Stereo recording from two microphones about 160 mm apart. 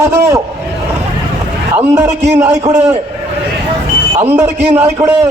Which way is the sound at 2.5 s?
45° right (ahead or behind).